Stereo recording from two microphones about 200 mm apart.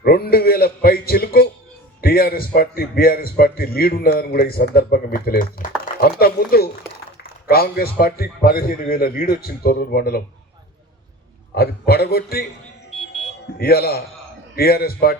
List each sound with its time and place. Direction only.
0.0 s a man's voice: 50° left (ahead or behind)
11.5 s a man's voice: 50° left (ahead or behind)
13.6 s a man's voice: 50° left (ahead or behind)